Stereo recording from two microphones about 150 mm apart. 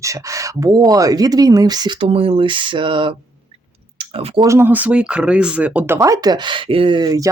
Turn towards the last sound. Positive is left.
turn(degrees=-25)  # may be behind; listen again after turning